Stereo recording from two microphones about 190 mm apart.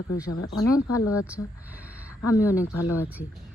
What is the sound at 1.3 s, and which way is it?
Speech, 5° right (ahead or behind).